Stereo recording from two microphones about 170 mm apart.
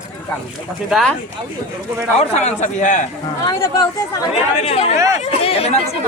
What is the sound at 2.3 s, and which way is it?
Speech, 45° left (ahead or behind).